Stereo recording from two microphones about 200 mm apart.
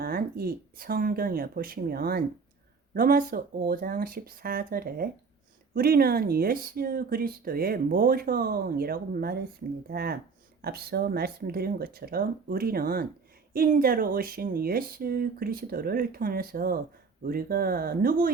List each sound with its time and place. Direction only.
0.0 s speech: 50° right (ahead or behind)